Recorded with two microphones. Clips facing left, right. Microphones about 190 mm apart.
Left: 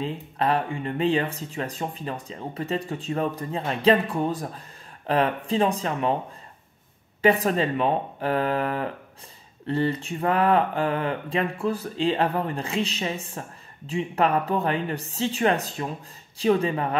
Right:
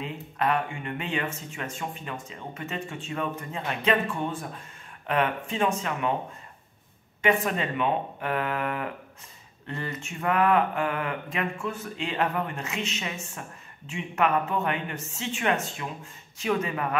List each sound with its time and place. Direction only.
0.0 s mantra: 30° left (ahead or behind)
7.2 s mantra: 35° left (ahead or behind)